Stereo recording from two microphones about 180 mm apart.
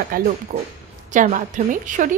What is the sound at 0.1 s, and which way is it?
A woman's voice, 55° right (ahead or behind).